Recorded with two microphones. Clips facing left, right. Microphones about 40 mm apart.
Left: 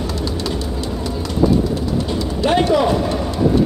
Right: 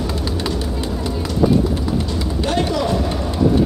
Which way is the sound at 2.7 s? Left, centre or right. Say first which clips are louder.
Left 4 dB; centre.